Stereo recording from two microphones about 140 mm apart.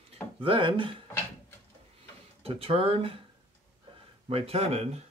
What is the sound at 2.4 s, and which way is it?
Speech, 45° right (ahead or behind).